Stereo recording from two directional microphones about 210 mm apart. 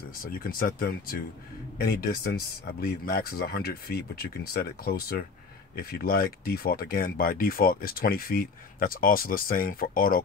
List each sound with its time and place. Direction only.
0.2 s speech: 45° left (ahead or behind)